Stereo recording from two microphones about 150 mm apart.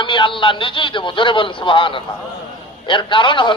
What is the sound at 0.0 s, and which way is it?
Speech, 35° left (ahead or behind).